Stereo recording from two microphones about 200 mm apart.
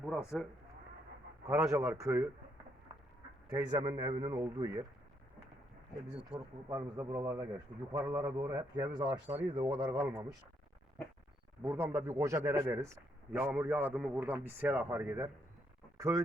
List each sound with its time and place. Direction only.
0.0 s speech: 5° right (ahead or behind)
1.5 s a man's voice: 15° right (ahead or behind)
3.5 s a man's voice: 20° right (ahead or behind)
6.3 s a man's voice: 15° right (ahead or behind)
11.6 s a man's voice: 15° right (ahead or behind)